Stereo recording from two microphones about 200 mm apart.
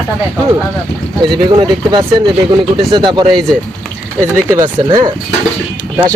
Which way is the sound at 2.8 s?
20° right (ahead or behind).